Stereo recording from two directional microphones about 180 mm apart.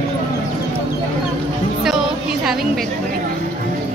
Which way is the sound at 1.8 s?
5° right (ahead or behind).